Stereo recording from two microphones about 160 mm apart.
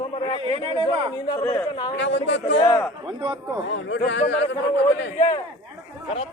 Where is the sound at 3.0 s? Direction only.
30° right (ahead or behind).